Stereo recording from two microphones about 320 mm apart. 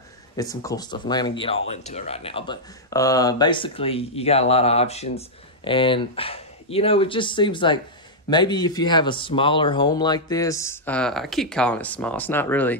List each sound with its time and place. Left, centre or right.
0.4 s speech: centre